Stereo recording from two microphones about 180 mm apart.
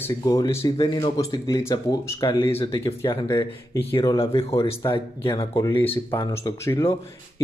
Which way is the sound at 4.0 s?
30° left (ahead or behind).